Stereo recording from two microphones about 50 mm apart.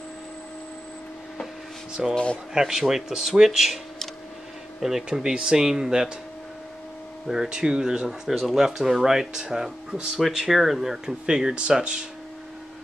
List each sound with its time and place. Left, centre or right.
2.0 s speech: centre
7.4 s speech: centre
8.3 s speech: centre